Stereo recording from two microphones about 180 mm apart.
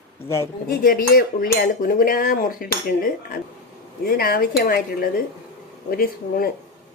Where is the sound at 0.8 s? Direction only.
50° left (ahead or behind).